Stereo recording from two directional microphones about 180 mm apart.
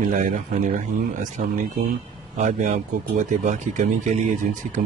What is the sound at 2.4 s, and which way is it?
Speech, 45° right (ahead or behind).